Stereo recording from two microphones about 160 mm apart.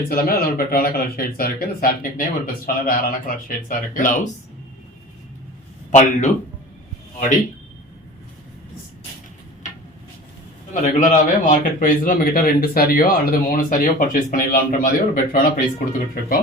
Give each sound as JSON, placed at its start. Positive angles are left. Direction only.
{"t": 0.1, "sound": "speech", "side_deg": 70}
{"t": 5.9, "sound": "speech", "side_deg": 50}
{"t": 10.8, "sound": "speech", "side_deg": 50}